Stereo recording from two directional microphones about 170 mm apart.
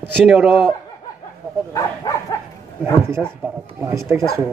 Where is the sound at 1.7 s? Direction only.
20° left (ahead or behind).